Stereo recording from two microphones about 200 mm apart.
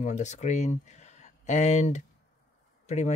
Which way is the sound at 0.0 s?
35° left (ahead or behind).